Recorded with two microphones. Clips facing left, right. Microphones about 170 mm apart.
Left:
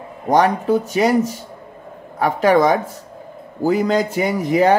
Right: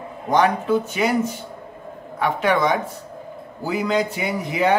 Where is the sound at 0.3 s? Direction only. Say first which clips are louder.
Left 3 dB; 40° left (ahead or behind).